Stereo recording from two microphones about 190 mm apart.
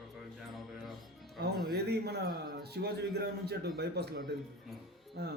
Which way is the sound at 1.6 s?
55° right (ahead or behind).